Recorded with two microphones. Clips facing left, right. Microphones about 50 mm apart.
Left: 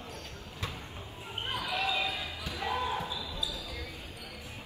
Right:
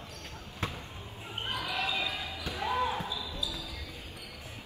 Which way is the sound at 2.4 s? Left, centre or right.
Right.